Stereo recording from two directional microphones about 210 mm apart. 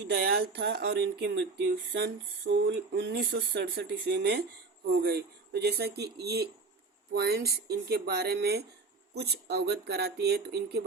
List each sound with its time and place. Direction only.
0.1 s speech: 50° right (ahead or behind)